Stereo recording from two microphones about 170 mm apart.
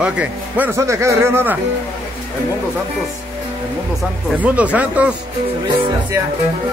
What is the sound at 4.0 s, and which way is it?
Speech, 10° right (ahead or behind).